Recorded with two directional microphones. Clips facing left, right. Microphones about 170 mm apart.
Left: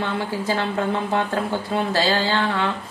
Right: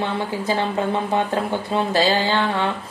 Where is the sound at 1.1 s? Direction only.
20° right (ahead or behind).